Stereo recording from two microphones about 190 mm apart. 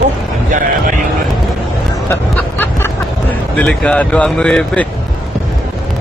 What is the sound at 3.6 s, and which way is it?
Speech, 5° left (ahead or behind).